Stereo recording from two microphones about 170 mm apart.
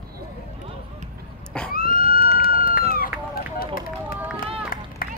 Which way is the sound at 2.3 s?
60° left (ahead or behind).